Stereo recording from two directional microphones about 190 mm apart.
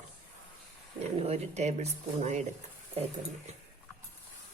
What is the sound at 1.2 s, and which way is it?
Speech, 35° right (ahead or behind).